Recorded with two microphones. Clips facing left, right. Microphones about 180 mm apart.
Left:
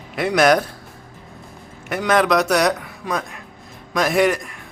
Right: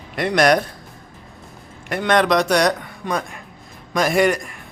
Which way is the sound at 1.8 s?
Centre (ahead or behind).